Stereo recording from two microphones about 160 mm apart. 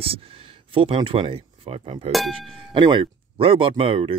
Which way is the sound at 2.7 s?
30° right (ahead or behind).